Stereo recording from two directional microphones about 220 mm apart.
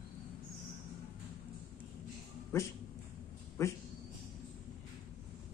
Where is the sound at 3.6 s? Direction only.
15° left (ahead or behind).